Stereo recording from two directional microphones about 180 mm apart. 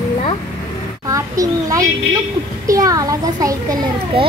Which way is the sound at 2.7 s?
20° right (ahead or behind).